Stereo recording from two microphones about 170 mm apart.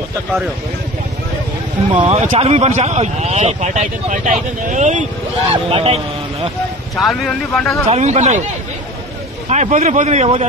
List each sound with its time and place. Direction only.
2.0 s speech: 35° right (ahead or behind)
5.5 s speech: 30° right (ahead or behind)
7.0 s speech: 5° left (ahead or behind)
7.9 s speech: 40° right (ahead or behind)
9.5 s speech: 40° right (ahead or behind)